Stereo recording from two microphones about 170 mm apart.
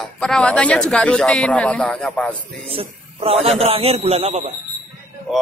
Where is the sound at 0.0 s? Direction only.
5° left (ahead or behind).